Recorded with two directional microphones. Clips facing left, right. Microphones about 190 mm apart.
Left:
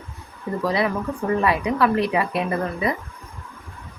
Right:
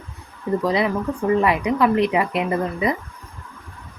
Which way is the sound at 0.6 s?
20° right (ahead or behind).